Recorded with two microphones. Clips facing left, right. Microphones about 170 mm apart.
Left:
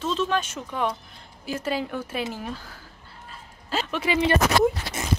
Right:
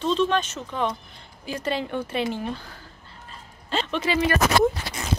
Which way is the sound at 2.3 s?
5° left (ahead or behind).